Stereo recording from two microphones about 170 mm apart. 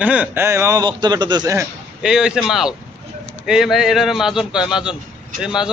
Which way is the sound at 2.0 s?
5° right (ahead or behind).